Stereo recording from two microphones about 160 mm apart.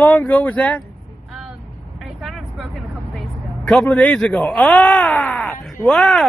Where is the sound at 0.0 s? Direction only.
10° left (ahead or behind).